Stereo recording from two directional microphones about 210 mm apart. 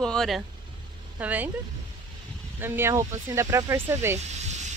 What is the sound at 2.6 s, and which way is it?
Speech, 10° right (ahead or behind).